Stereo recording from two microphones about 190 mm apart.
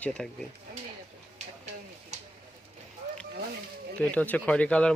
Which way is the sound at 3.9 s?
10° left (ahead or behind).